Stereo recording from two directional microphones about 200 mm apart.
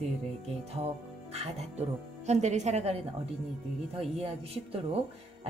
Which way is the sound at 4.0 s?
30° right (ahead or behind).